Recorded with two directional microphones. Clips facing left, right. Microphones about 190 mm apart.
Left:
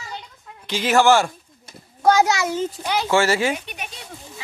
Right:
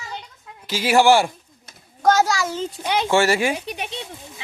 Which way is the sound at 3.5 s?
30° right (ahead or behind).